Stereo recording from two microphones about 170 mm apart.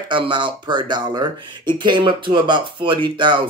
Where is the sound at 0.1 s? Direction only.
30° right (ahead or behind).